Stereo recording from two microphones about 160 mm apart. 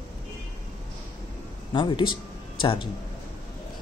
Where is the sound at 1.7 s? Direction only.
30° left (ahead or behind).